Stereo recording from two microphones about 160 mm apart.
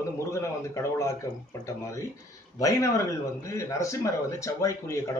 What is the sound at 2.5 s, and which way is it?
A man's voice, 20° left (ahead or behind).